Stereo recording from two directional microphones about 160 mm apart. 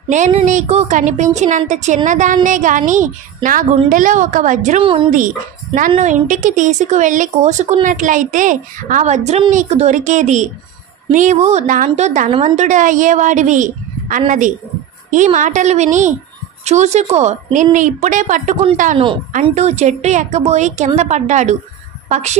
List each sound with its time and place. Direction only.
0.1 s a woman's voice: 45° right (ahead or behind)
4.8 s speech: 35° right (ahead or behind)
5.8 s a woman's voice: 50° right (ahead or behind)